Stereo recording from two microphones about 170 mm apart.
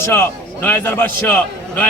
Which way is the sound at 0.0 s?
15° left (ahead or behind).